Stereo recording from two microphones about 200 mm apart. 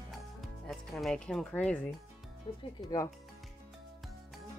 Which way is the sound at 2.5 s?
20° left (ahead or behind).